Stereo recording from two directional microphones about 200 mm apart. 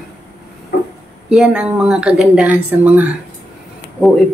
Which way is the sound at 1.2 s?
5° right (ahead or behind).